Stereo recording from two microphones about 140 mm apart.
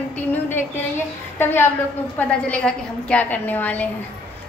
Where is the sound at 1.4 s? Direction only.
15° left (ahead or behind).